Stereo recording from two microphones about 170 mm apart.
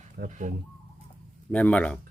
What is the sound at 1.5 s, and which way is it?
Speech, 10° left (ahead or behind).